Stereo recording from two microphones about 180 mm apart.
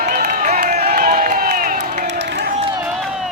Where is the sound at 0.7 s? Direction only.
60° right (ahead or behind).